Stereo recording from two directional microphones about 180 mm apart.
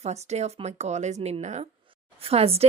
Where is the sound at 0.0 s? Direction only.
40° right (ahead or behind).